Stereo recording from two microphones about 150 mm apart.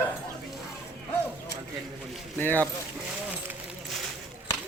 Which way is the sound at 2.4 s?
10° left (ahead or behind).